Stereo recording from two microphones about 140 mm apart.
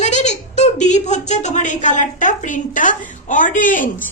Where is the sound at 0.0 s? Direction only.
55° left (ahead or behind).